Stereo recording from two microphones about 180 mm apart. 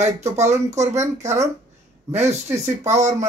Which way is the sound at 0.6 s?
40° right (ahead or behind).